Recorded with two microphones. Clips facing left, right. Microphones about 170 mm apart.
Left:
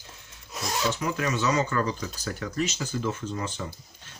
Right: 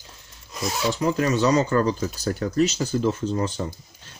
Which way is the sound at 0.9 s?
35° right (ahead or behind).